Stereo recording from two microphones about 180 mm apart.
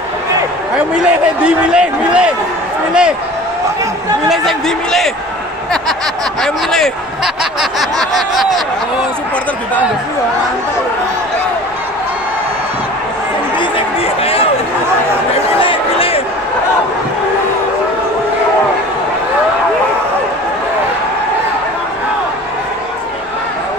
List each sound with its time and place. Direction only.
0.7 s a man's voice: 5° right (ahead or behind)
4.3 s a man's voice: centre (ahead or behind)
6.4 s a man's voice: 5° left (ahead or behind)
8.0 s a man's voice: centre (ahead or behind)
13.6 s a sound: 30° left (ahead or behind)
15.6 s a sound: 30° left (ahead or behind)